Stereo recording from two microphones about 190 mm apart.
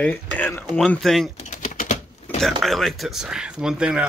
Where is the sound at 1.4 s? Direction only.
40° left (ahead or behind).